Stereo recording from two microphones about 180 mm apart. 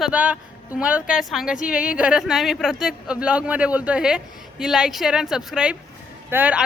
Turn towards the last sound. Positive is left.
turn(degrees=-10)  # may be behind; listen again after turning